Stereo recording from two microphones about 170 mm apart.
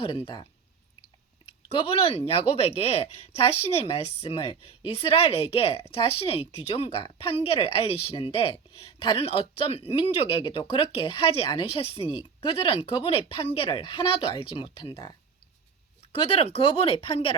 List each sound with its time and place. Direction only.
0.0 s a woman's voice: 30° left (ahead or behind)
1.7 s a woman's voice: 35° left (ahead or behind)
16.3 s a woman's voice: 35° left (ahead or behind)